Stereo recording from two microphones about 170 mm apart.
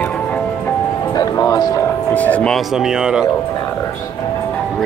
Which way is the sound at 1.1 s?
20° left (ahead or behind).